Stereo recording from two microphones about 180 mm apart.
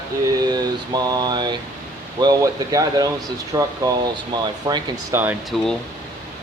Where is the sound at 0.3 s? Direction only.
20° right (ahead or behind).